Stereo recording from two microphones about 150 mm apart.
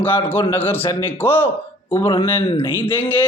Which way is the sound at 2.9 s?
15° left (ahead or behind).